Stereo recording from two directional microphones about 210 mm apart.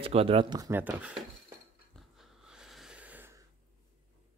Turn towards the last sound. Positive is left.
turn(degrees=-10)  # may be behind; listen again after turning